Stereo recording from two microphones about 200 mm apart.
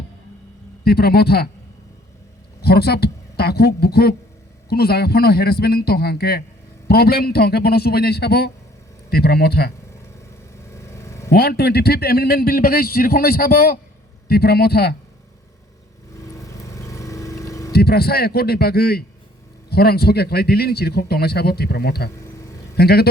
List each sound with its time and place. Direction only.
0.9 s a man's voice: 50° left (ahead or behind)
2.6 s a man's voice: 50° left (ahead or behind)
10.8 s a sound: 15° left (ahead or behind)
11.3 s a man's voice: 50° left (ahead or behind)
16.2 s vehicle: 15° left (ahead or behind)
17.7 s a man's voice: 50° left (ahead or behind)